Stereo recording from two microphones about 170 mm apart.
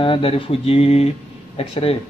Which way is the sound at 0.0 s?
30° left (ahead or behind).